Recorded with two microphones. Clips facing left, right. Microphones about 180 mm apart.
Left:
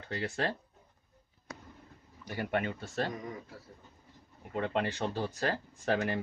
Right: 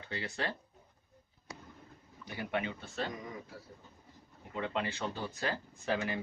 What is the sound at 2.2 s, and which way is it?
Speech, 45° left (ahead or behind).